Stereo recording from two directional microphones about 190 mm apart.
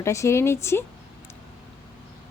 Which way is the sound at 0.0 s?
15° left (ahead or behind).